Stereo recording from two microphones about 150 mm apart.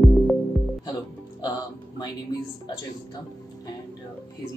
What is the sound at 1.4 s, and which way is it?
Music, 25° left (ahead or behind).